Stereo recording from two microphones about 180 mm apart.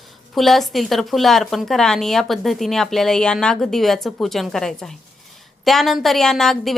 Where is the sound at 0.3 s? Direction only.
Centre (ahead or behind).